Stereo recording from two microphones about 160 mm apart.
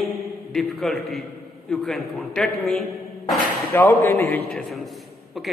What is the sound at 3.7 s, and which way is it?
Speech, 15° left (ahead or behind).